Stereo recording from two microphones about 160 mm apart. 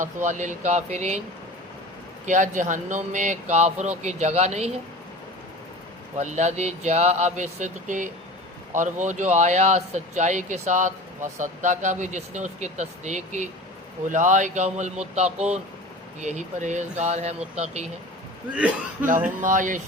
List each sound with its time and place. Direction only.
0.0 s speech: 50° right (ahead or behind)
2.2 s speech: 50° right (ahead or behind)
6.1 s speech: 50° right (ahead or behind)
19.4 s speech: 55° right (ahead or behind)